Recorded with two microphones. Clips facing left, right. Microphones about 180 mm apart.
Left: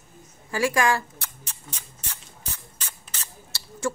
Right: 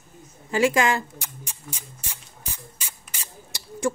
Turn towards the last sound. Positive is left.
turn(degrees=-15)  # may be behind; listen again after turning